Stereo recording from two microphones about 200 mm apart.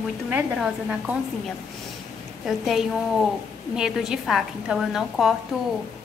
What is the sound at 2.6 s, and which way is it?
A woman's voice, centre (ahead or behind).